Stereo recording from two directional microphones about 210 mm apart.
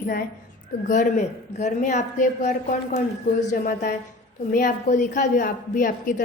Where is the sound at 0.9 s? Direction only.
35° left (ahead or behind).